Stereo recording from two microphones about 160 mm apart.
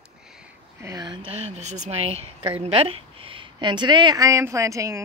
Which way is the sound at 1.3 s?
45° right (ahead or behind).